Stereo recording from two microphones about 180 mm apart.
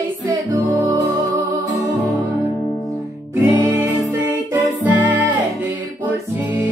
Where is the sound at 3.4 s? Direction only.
10° right (ahead or behind).